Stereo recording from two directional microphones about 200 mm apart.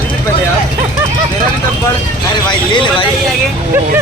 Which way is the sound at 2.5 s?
25° left (ahead or behind).